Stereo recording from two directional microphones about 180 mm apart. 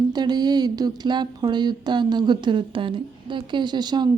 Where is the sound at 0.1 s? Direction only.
25° right (ahead or behind).